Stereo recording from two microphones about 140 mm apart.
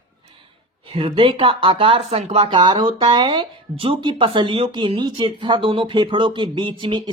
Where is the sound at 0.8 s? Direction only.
40° right (ahead or behind).